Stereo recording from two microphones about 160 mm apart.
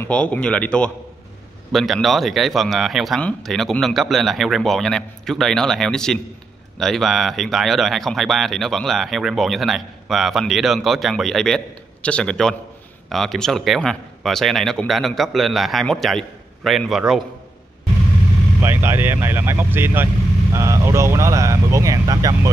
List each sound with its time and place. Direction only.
0.0 s a man's voice: 10° left (ahead or behind)
18.6 s speech: 15° right (ahead or behind)